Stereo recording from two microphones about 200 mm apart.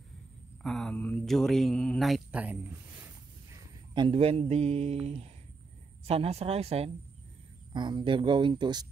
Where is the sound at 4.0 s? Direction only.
25° right (ahead or behind).